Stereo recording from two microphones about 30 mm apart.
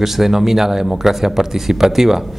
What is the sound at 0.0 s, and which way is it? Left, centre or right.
Speech, centre.